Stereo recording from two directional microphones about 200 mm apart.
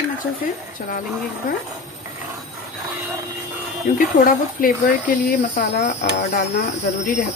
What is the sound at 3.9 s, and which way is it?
Speech, 45° left (ahead or behind).